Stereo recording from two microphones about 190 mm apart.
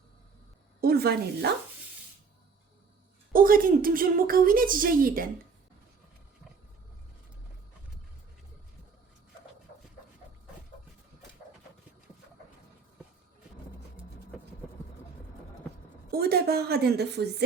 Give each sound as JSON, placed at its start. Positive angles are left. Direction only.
{"t": 0.8, "sound": "speech", "side_deg": -55}
{"t": 3.3, "sound": "a woman's voice", "side_deg": -50}
{"t": 16.1, "sound": "a woman's voice", "side_deg": -55}